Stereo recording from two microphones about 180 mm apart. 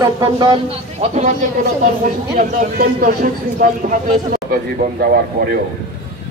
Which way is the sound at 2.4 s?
55° right (ahead or behind).